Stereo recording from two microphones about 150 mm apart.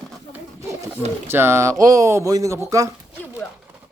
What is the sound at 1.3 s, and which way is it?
Speech, 15° right (ahead or behind).